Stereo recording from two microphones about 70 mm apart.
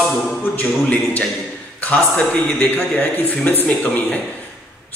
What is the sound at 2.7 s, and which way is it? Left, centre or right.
A man's voice, left.